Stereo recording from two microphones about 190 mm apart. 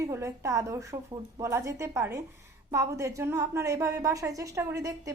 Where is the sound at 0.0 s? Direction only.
15° right (ahead or behind).